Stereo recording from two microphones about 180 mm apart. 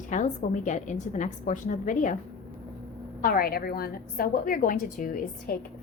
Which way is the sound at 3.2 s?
55° left (ahead or behind).